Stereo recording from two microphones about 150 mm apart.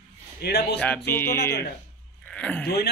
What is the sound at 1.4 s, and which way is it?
Speech, 90° left.